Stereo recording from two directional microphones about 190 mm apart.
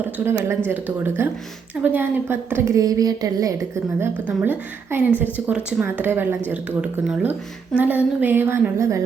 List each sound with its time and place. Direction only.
0.0 s speech: 15° right (ahead or behind)
4.0 s speech: 10° right (ahead or behind)